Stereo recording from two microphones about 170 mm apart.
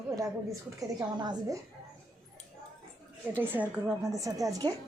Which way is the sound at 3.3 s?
10° right (ahead or behind).